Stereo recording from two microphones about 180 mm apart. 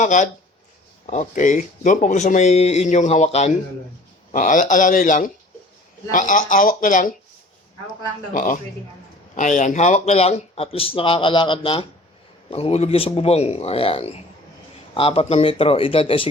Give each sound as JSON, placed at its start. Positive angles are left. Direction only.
{"t": 0.0, "sound": "speech", "side_deg": 45}
{"t": 8.3, "sound": "speech", "side_deg": 45}